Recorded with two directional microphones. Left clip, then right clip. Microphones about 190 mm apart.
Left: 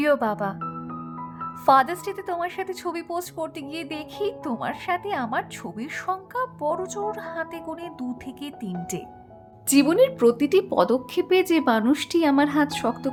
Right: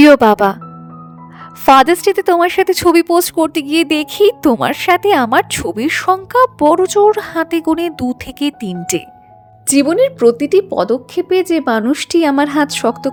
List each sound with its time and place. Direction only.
0.0 s speech: 60° right (ahead or behind)
1.6 s a woman's voice: 65° right (ahead or behind)
9.6 s speech: 30° right (ahead or behind)